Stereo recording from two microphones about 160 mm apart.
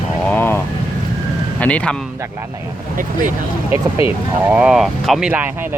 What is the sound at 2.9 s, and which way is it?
Speech, 55° right (ahead or behind).